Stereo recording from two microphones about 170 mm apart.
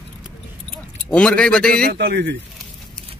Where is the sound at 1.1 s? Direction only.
5° left (ahead or behind).